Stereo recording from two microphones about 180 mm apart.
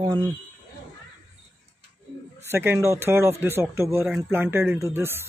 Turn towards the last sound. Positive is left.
turn(degrees=-15)  # may be behind; listen again after turning